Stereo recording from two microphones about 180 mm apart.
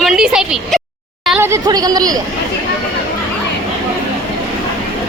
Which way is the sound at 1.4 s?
20° right (ahead or behind).